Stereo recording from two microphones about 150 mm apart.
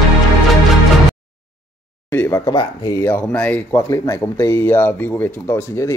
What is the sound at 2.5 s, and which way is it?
Speech, 25° left (ahead or behind).